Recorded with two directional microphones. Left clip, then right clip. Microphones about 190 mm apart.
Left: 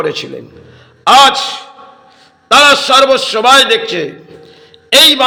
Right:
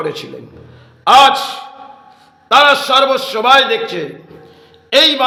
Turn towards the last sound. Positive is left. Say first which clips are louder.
# left 4 dB
turn(degrees=15)  # may be behind; listen again after turning